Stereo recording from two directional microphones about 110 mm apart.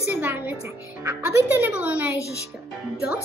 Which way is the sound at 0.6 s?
25° right (ahead or behind).